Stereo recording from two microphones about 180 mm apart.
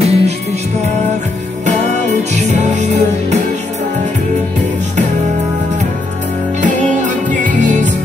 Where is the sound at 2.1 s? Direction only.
40° right (ahead or behind).